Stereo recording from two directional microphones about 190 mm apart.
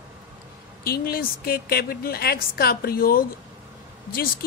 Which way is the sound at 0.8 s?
50° left (ahead or behind).